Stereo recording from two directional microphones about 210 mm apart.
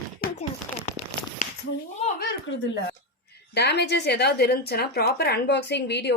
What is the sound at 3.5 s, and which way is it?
A woman's voice, 50° left (ahead or behind).